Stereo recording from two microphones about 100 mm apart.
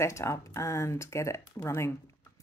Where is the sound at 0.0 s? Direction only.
30° left (ahead or behind).